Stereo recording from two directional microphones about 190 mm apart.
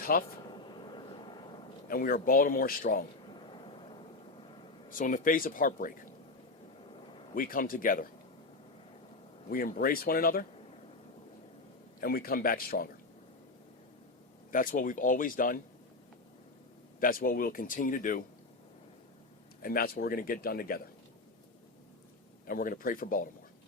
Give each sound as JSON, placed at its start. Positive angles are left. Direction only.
{"t": 0.0, "sound": "speech", "side_deg": 50}
{"t": 0.4, "sound": "vehicle", "side_deg": 25}
{"t": 1.9, "sound": "speech", "side_deg": 50}
{"t": 3.2, "sound": "vehicle", "side_deg": 25}
{"t": 4.9, "sound": "speech", "side_deg": 45}
{"t": 7.3, "sound": "speech", "side_deg": 45}
{"t": 9.5, "sound": "speech", "side_deg": 50}
{"t": 11.9, "sound": "speech", "side_deg": 50}
{"t": 14.5, "sound": "speech", "side_deg": 45}
{"t": 17.0, "sound": "speech", "side_deg": 50}
{"t": 19.6, "sound": "speech", "side_deg": 50}
{"t": 22.4, "sound": "speech", "side_deg": 50}